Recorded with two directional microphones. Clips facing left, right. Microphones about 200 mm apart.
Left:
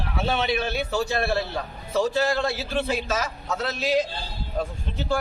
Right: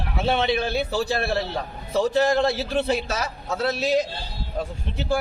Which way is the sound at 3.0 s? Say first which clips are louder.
Left 1 dB; 35° right (ahead or behind).